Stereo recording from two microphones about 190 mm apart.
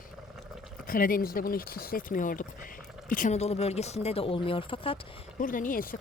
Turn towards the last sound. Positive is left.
turn(degrees=50)  # may be behind; listen again after turning